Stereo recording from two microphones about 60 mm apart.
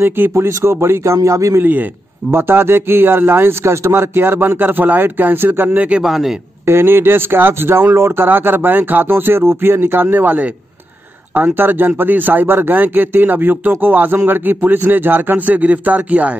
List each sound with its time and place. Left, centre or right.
0.3 s a man's voice: right
1.6 s speech: right
2.3 s speech: right
6.0 s a man's voice: centre
6.6 s speech: right